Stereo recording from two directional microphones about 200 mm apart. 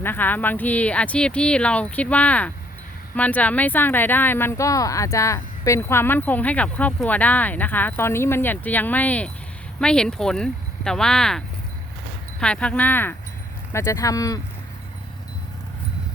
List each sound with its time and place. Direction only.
0.0 s speech: 10° left (ahead or behind)